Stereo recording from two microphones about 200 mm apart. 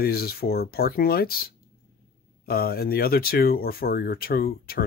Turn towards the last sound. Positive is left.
turn(degrees=50)  # may be behind; listen again after turning